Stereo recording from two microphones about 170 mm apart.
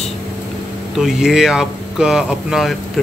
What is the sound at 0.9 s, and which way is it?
Speech, 5° right (ahead or behind).